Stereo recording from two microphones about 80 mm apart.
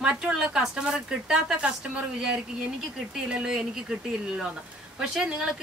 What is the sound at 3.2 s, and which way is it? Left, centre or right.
Speech, centre.